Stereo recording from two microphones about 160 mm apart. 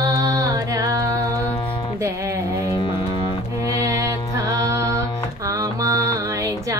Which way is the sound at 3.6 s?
20° right (ahead or behind).